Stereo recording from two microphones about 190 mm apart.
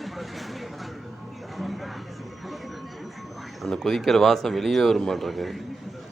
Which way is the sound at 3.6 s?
Centre (ahead or behind).